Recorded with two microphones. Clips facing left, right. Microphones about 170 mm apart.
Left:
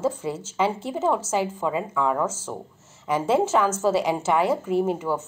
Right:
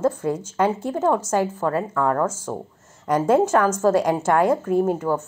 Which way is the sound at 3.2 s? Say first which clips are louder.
Right 3 dB; 10° right (ahead or behind).